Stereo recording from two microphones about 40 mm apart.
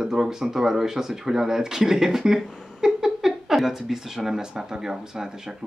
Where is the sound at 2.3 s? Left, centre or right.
Centre.